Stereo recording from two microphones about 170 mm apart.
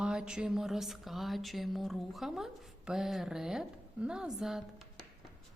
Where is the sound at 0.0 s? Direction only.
5° right (ahead or behind).